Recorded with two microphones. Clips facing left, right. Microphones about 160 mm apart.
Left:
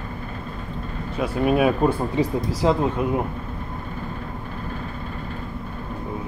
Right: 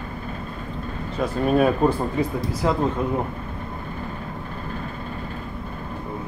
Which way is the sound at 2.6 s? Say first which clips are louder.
Left 3 dB; 20° left (ahead or behind).